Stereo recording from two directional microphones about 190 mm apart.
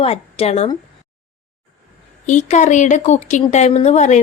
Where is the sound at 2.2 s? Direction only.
40° left (ahead or behind).